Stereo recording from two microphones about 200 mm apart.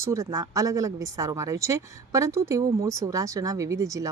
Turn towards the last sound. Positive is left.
turn(degrees=-15)  # may be behind; listen again after turning